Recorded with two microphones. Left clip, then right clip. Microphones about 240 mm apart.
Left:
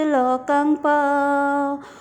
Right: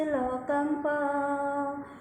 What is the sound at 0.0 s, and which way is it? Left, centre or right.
Music, left.